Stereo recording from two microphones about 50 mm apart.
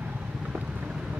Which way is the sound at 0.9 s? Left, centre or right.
Centre.